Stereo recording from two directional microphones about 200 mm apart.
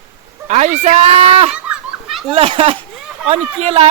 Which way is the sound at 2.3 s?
30° right (ahead or behind).